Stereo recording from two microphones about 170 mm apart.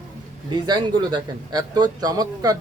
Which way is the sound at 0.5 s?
25° right (ahead or behind).